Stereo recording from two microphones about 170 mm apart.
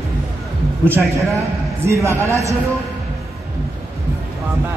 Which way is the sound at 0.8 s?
15° right (ahead or behind).